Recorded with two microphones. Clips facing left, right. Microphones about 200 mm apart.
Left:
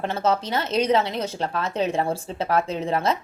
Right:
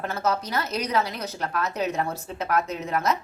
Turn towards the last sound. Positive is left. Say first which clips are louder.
# left 3 dB
turn(degrees=30)  # may be behind; listen again after turning